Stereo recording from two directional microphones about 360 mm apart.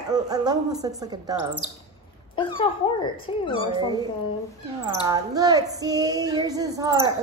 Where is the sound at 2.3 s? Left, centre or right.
Centre.